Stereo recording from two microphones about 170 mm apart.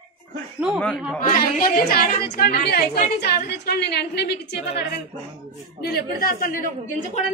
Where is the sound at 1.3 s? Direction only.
60° left (ahead or behind).